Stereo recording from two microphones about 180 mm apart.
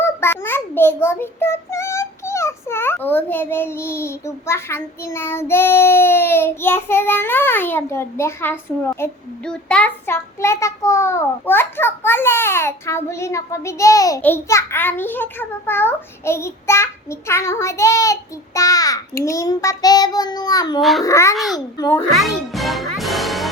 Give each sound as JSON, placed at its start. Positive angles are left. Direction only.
{"t": 0.0, "sound": "a child's voice", "side_deg": 15}
{"t": 19.2, "sound": "child singing", "side_deg": 15}
{"t": 21.0, "sound": "a child's voice", "side_deg": 15}
{"t": 21.3, "sound": "a child's voice", "side_deg": 0}
{"t": 21.8, "sound": "child singing", "side_deg": 20}
{"t": 22.1, "sound": "music", "side_deg": 0}